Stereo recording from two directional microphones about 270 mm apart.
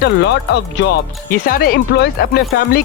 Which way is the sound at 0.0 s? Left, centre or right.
Left.